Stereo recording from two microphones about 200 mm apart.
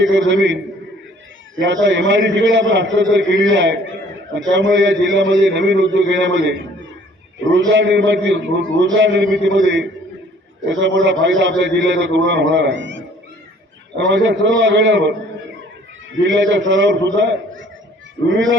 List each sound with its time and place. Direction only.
0.0 s a man's voice: 65° right (ahead or behind)
7.7 s a man's voice: 65° right (ahead or behind)
14.1 s a man's voice: 65° right (ahead or behind)
16.2 s a man's voice: 65° right (ahead or behind)